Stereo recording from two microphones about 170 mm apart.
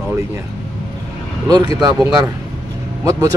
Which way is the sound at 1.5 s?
20° right (ahead or behind).